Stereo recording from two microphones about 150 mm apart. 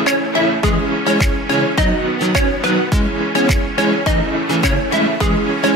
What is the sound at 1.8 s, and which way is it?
Music, centre (ahead or behind).